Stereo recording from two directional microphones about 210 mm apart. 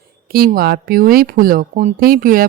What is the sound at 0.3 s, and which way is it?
Speech, 45° right (ahead or behind).